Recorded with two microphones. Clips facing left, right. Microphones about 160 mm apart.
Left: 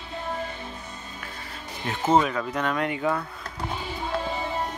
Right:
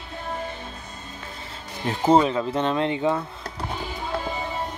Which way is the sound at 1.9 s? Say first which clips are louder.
Right 3 dB; 30° right (ahead or behind).